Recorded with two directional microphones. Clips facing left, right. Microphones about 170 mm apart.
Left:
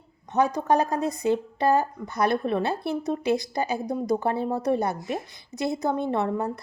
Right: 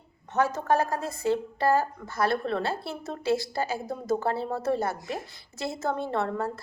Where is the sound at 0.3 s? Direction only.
15° left (ahead or behind).